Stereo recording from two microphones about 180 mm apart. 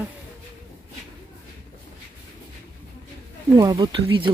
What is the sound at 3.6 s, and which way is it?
Speech, 20° right (ahead or behind).